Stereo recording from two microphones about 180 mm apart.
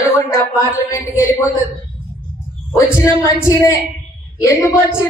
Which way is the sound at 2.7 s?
15° left (ahead or behind).